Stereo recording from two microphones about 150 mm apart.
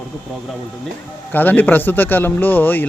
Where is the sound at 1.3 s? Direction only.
10° left (ahead or behind).